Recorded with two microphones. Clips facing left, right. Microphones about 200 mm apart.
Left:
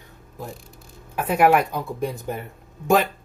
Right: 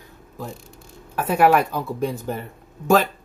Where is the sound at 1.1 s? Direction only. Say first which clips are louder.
Right 1 dB; 15° left (ahead or behind).